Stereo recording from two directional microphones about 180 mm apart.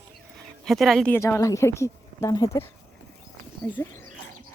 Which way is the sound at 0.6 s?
Centre (ahead or behind).